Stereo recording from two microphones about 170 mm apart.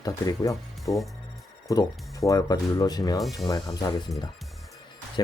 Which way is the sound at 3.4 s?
20° left (ahead or behind).